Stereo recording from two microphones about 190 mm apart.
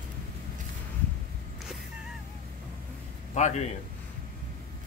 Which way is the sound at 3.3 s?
40° left (ahead or behind).